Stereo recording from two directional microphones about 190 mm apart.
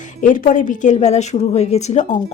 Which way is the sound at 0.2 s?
45° left (ahead or behind).